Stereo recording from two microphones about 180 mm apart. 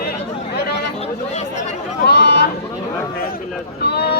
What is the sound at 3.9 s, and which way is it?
Speech, 65° left (ahead or behind).